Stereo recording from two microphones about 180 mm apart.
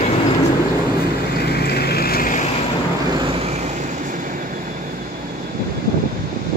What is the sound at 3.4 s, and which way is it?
Vehicle, 40° right (ahead or behind).